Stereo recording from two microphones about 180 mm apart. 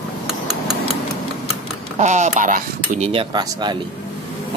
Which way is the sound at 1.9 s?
40° right (ahead or behind).